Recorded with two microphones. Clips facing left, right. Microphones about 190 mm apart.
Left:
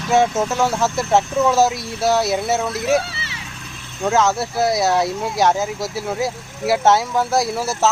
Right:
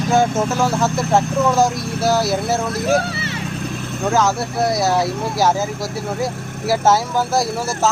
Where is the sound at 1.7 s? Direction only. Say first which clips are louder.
Right 4 dB; 55° right (ahead or behind).